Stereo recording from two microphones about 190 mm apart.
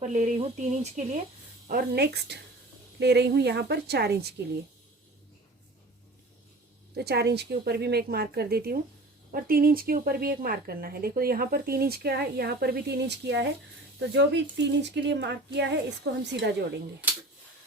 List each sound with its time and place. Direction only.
0.1 s a woman's voice: 40° right (ahead or behind); by 4.4 s 60° right (ahead or behind)
6.9 s a woman's voice: 60° right (ahead or behind)